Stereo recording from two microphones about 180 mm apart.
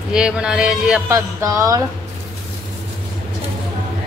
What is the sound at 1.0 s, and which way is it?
Music, 15° right (ahead or behind).